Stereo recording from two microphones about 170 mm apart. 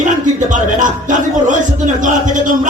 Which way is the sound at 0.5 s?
50° right (ahead or behind).